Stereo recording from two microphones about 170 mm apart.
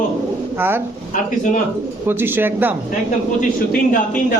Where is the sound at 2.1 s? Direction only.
10° right (ahead or behind).